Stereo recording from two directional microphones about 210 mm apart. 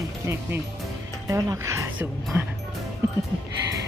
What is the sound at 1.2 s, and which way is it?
Speech, 15° right (ahead or behind).